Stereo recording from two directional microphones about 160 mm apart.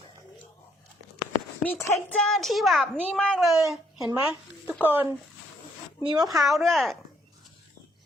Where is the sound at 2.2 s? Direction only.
Centre (ahead or behind).